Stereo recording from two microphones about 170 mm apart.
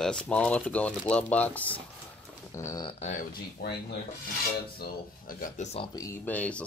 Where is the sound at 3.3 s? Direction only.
65° left (ahead or behind).